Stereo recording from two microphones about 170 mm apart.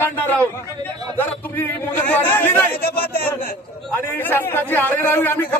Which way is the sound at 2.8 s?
65° left (ahead or behind).